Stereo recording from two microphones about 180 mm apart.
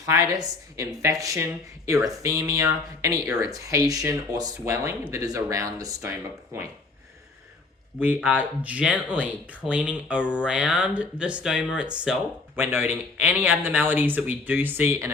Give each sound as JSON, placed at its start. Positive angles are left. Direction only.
{"t": 0.0, "sound": "a woman's voice", "side_deg": -20}
{"t": 7.9, "sound": "speech", "side_deg": -10}